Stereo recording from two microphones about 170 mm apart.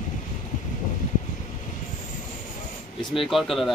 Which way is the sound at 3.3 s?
Centre (ahead or behind).